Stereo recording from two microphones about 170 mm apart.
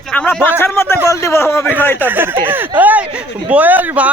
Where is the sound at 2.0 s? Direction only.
10° right (ahead or behind).